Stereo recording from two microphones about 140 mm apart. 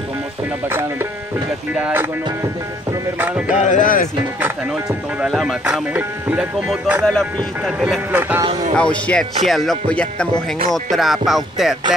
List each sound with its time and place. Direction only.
1.8 s music: 15° right (ahead or behind)
3.2 s music: 10° right (ahead or behind)
3.5 s speech: 60° left (ahead or behind)
5.2 s speech: centre (ahead or behind)
5.9 s music: 10° right (ahead or behind)
7.1 s speech: 5° left (ahead or behind)
8.1 s music: 15° right (ahead or behind)
8.7 s speech: 5° left (ahead or behind)